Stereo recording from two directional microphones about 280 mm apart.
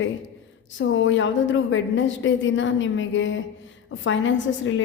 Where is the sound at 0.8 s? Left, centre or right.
Left.